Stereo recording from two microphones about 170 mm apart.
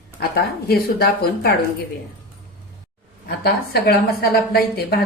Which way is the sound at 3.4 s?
65° left (ahead or behind).